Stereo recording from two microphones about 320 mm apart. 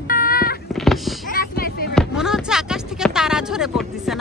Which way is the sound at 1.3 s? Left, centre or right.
Left.